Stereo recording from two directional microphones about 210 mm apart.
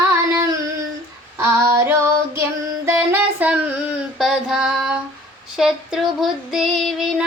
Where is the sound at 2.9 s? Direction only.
10° right (ahead or behind).